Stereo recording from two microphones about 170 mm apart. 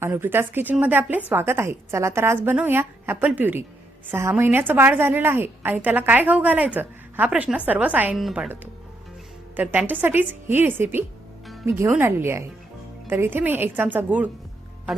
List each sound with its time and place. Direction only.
0.0 s a woman's voice: 10° right (ahead or behind)